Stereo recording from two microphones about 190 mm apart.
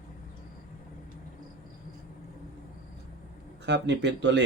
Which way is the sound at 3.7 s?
65° right (ahead or behind).